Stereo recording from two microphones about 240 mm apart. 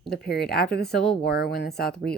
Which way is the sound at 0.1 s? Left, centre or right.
Left.